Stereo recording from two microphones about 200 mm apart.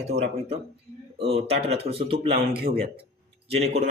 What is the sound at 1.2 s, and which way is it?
Speech, 30° right (ahead or behind).